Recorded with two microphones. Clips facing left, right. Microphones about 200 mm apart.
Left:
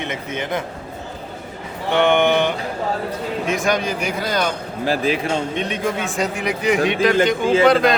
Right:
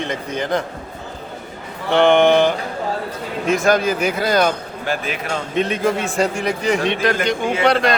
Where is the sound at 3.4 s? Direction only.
Centre (ahead or behind).